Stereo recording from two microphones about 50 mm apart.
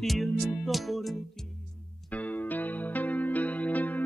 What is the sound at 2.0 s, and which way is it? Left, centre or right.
Music, left.